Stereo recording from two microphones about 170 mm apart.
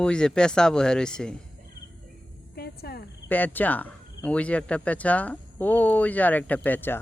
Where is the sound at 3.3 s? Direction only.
10° left (ahead or behind).